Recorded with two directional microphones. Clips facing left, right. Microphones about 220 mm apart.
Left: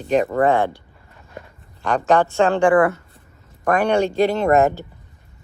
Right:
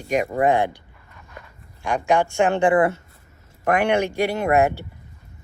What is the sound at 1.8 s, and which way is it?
Speech, 10° right (ahead or behind).